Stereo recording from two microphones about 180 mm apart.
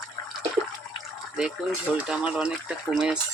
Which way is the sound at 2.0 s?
5° right (ahead or behind).